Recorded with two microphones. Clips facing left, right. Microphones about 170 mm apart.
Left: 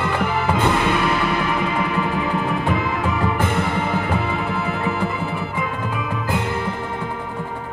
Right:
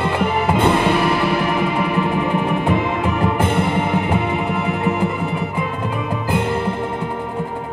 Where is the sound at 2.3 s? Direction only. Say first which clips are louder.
Right 3 dB; 20° right (ahead or behind).